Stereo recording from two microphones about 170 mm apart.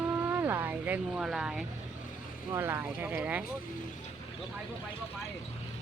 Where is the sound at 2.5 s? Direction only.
15° right (ahead or behind).